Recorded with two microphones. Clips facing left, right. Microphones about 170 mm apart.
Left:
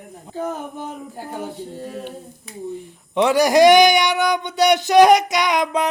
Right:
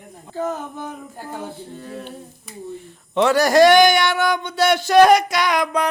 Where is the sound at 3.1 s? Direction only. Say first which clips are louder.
Even; 15° left (ahead or behind).